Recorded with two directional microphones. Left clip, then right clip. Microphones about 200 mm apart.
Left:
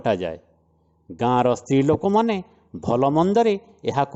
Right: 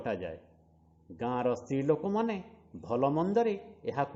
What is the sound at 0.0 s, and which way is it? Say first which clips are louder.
A man's voice: left 13 dB; 45° left (ahead or behind).